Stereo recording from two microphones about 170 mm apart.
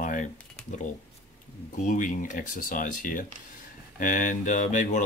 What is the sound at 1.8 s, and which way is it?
Speech, 50° left (ahead or behind).